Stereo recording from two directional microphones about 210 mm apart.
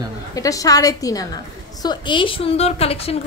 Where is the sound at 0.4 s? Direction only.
15° left (ahead or behind).